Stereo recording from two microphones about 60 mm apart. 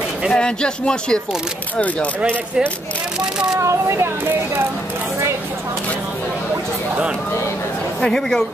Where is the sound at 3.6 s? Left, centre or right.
Right.